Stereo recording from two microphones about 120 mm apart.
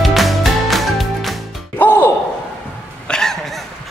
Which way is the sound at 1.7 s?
15° left (ahead or behind).